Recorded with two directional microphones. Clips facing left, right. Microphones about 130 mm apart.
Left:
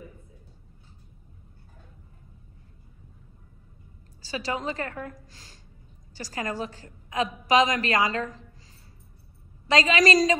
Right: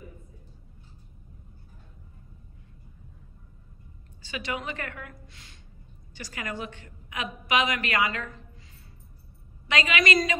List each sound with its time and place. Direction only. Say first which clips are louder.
4.2 s a woman's voice: left 3 dB; 35° left (ahead or behind)
9.7 s a woman's voice: left 5 dB; 35° left (ahead or behind)